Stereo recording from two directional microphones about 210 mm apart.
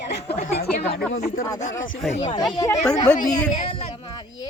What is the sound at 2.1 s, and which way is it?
Speech, 35° left (ahead or behind).